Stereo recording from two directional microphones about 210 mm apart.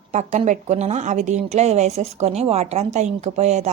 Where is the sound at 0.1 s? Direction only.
35° right (ahead or behind).